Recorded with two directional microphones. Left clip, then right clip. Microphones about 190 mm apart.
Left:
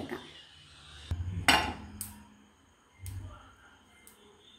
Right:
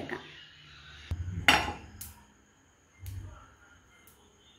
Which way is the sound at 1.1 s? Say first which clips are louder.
Left 1 dB; centre (ahead or behind).